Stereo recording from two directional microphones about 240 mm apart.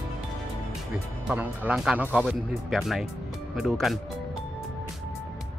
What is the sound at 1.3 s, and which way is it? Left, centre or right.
Speech, centre.